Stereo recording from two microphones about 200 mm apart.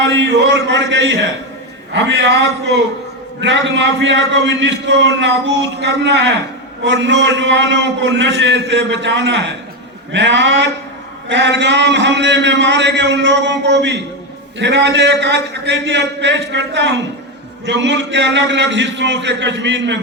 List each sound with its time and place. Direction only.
0.0 s a man's voice: 65° right (ahead or behind)